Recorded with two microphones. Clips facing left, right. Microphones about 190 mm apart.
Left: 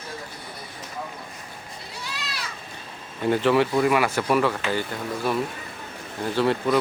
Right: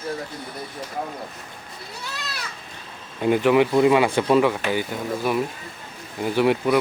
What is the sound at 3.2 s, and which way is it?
Speech, 15° right (ahead or behind).